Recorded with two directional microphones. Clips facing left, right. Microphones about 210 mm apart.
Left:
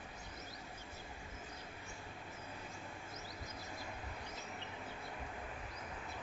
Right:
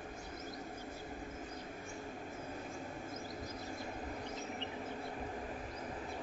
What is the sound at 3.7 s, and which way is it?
Music, 40° right (ahead or behind).